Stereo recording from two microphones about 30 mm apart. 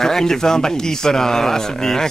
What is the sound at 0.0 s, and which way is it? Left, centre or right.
Speech, centre.